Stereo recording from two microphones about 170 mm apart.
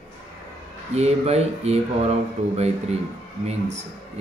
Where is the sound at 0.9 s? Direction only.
40° right (ahead or behind).